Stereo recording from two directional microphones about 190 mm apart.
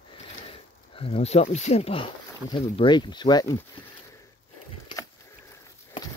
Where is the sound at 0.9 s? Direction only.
30° left (ahead or behind).